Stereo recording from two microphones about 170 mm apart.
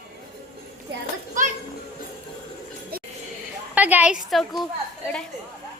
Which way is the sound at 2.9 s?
60° right (ahead or behind).